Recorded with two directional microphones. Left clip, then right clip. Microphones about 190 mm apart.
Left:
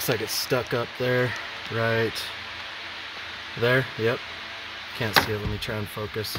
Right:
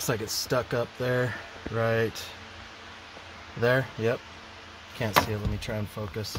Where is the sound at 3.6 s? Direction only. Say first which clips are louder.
Left 2 dB; 20° left (ahead or behind).